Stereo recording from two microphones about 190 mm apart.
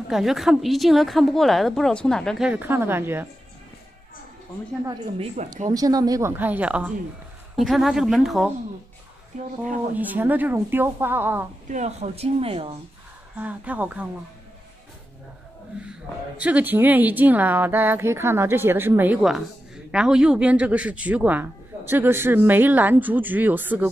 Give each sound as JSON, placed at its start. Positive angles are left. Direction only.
{"t": 0.1, "sound": "a woman's voice", "side_deg": 0}
{"t": 5.2, "sound": "speech", "side_deg": -35}
{"t": 5.7, "sound": "a woman's voice", "side_deg": -20}
{"t": 9.3, "sound": "speech", "side_deg": -40}
{"t": 9.9, "sound": "speech", "side_deg": -10}
{"t": 11.7, "sound": "speech", "side_deg": -35}
{"t": 13.4, "sound": "speech", "side_deg": -10}
{"t": 16.3, "sound": "speech", "side_deg": -5}